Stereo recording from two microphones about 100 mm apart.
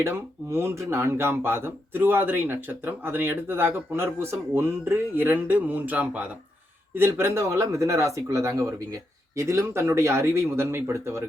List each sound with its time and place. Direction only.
0.0 s speech: 25° right (ahead or behind)